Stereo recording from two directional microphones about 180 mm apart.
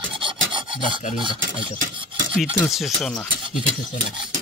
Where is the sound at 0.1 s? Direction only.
30° right (ahead or behind).